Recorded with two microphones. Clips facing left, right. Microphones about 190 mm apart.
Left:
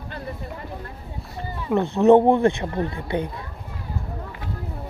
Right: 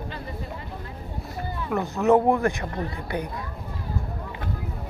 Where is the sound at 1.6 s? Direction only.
25° left (ahead or behind).